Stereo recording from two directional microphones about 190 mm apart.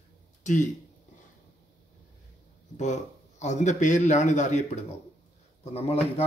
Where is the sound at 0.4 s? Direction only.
40° left (ahead or behind).